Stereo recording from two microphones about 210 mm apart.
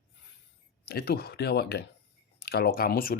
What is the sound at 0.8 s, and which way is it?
Speech, 50° left (ahead or behind).